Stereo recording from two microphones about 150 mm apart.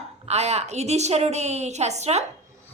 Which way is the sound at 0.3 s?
45° right (ahead or behind).